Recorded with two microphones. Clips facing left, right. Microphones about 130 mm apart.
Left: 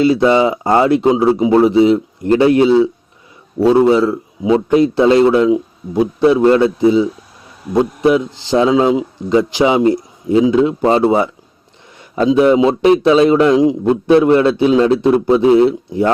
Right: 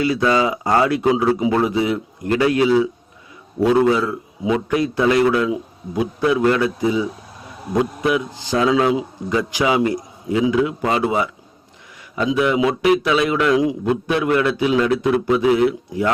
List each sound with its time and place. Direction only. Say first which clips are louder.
0.0 s a man's voice: left 6 dB; 25° left (ahead or behind)